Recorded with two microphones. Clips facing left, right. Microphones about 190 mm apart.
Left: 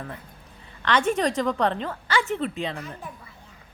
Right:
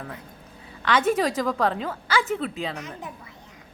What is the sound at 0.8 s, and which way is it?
A woman's voice, 5° right (ahead or behind).